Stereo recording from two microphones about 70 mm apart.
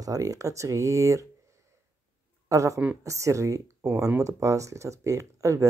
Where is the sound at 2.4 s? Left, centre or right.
Right.